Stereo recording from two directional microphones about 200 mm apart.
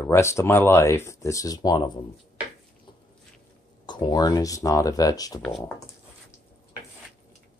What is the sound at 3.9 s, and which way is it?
Speech, 20° left (ahead or behind).